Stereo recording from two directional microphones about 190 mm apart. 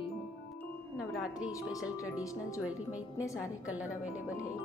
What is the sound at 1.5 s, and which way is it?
Speech, 20° left (ahead or behind).